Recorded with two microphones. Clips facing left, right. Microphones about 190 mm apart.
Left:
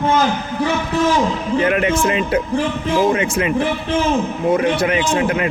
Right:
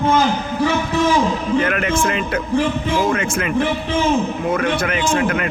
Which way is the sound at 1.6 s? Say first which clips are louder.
Left 3 dB; 25° left (ahead or behind).